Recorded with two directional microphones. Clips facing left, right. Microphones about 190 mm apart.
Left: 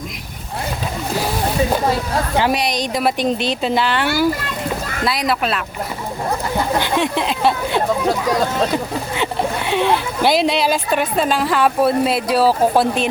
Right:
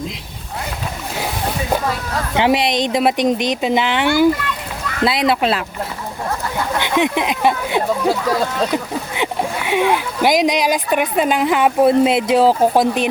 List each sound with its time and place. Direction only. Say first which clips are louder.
2.3 s a woman's voice: right 4 dB; 20° right (ahead or behind)
6.9 s speech: right 1 dB; 15° right (ahead or behind)